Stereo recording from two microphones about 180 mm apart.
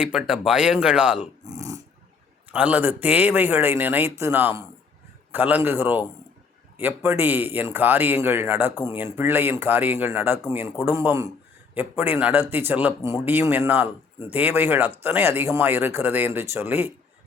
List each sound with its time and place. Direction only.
0.0 s speech: 5° right (ahead or behind)
1.5 s dog: 20° right (ahead or behind)
2.5 s speech: 5° right (ahead or behind)